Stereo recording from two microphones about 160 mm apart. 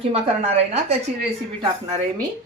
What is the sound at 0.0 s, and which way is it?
Speech, 40° right (ahead or behind).